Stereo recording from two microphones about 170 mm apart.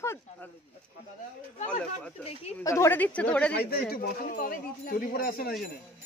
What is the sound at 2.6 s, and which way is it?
Speech, 20° left (ahead or behind).